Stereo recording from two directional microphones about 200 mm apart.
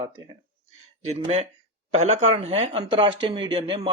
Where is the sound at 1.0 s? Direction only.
30° right (ahead or behind).